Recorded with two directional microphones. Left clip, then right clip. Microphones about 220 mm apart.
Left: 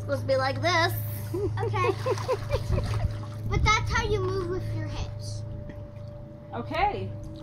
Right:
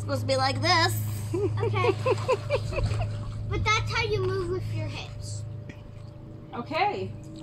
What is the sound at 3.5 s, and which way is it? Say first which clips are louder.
Speech: left 1 dB; centre (ahead or behind).